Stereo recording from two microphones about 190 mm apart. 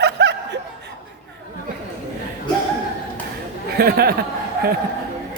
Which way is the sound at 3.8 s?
55° right (ahead or behind).